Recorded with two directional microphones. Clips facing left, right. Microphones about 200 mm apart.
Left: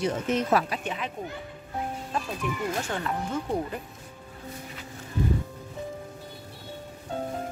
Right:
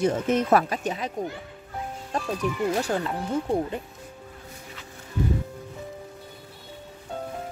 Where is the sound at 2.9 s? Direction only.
30° right (ahead or behind).